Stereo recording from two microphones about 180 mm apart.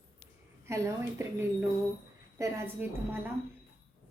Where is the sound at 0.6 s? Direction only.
15° right (ahead or behind).